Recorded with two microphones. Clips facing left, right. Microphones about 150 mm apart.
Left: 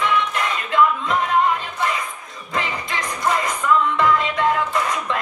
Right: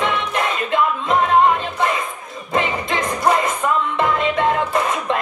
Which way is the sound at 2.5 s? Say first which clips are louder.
Right 5 dB; 25° right (ahead or behind).